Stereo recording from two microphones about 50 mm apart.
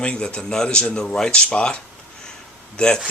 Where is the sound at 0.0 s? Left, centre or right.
Left.